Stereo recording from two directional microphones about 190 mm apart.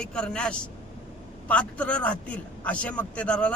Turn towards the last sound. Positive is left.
turn(degrees=5)  # may be behind; listen again after turning